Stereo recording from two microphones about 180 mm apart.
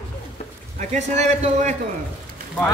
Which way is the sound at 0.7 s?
40° right (ahead or behind).